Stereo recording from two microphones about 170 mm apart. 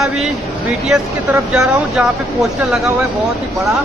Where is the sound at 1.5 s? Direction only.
5° right (ahead or behind).